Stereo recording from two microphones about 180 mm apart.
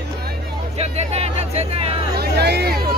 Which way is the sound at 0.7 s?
35° right (ahead or behind).